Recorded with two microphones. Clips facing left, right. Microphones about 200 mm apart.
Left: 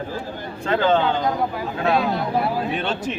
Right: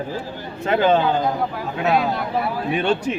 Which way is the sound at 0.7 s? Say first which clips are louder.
Right 2 dB; 15° right (ahead or behind).